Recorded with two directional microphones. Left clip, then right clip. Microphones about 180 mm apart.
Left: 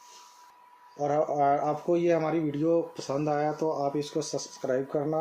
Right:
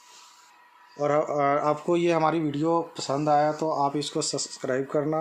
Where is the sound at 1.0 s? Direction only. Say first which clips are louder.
Right 2 dB; 35° right (ahead or behind).